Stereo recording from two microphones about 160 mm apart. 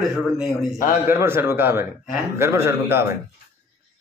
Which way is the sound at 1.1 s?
15° right (ahead or behind).